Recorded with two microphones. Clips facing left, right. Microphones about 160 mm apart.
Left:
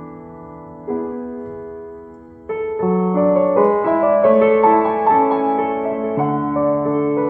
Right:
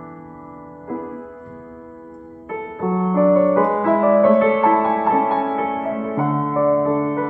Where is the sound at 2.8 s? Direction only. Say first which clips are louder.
Even; 20° left (ahead or behind).